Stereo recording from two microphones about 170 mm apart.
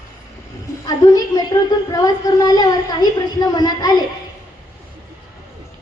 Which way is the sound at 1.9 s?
25° left (ahead or behind).